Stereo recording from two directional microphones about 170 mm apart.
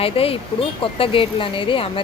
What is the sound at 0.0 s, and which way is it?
Speech, 35° left (ahead or behind).